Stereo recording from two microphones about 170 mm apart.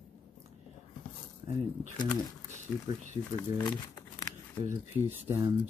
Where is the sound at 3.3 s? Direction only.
10° left (ahead or behind).